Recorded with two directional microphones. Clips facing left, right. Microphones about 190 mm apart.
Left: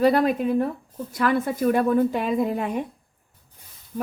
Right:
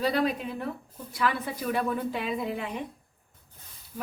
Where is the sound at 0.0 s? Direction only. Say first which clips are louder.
Left 8 dB; 50° left (ahead or behind).